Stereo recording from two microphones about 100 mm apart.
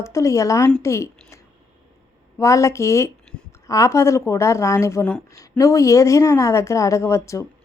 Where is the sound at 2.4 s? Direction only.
30° left (ahead or behind).